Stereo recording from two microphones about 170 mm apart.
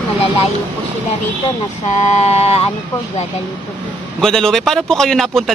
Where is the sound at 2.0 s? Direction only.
40° left (ahead or behind).